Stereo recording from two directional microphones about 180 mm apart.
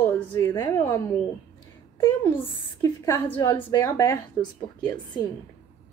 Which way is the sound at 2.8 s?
15° left (ahead or behind).